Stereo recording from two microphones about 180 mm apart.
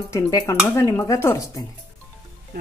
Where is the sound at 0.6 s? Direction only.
15° left (ahead or behind).